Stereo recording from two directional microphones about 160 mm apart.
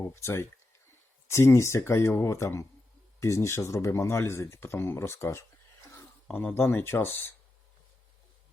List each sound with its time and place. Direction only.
0.0 s speech: 15° left (ahead or behind)